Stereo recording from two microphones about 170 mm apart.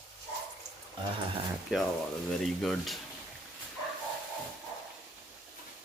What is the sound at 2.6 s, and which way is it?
Speech, centre (ahead or behind).